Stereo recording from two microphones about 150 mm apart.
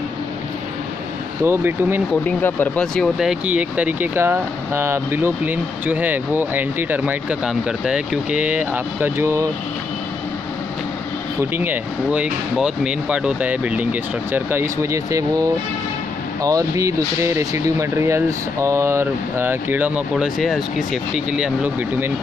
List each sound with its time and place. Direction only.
1.4 s speech: 15° right (ahead or behind)
2.2 s speech: 10° left (ahead or behind); by 9.5 s 15° right (ahead or behind)
11.5 s speech: 10° right (ahead or behind)